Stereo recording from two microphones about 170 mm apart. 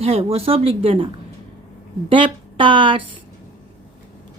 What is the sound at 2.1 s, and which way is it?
Speech, 30° right (ahead or behind).